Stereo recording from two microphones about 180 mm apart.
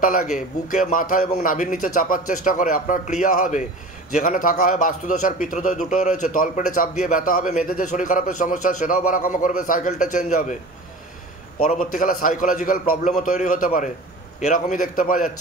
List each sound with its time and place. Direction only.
0.0 s a man's voice: 50° left (ahead or behind)
11.8 s a man's voice: 50° left (ahead or behind)